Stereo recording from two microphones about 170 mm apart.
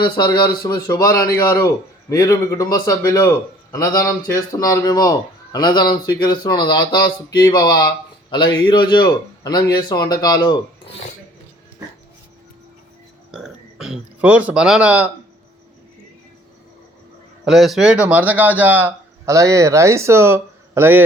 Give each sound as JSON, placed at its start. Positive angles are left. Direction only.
{"t": 0.0, "sound": "a man's voice", "side_deg": 25}
{"t": 13.3, "sound": "speech", "side_deg": -5}
{"t": 17.4, "sound": "speech", "side_deg": 0}